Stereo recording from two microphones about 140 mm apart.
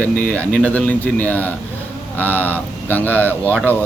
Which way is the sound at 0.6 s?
10° left (ahead or behind).